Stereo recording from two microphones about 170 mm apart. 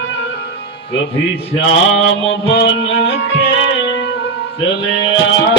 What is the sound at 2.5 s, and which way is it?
Music, 90° left.